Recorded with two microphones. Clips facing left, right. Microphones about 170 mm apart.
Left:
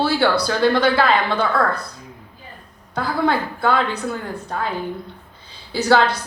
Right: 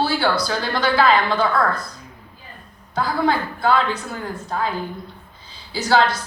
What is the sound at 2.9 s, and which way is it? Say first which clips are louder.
Speech: even; 60° left (ahead or behind).